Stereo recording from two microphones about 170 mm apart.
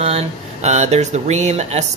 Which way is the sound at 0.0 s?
40° right (ahead or behind).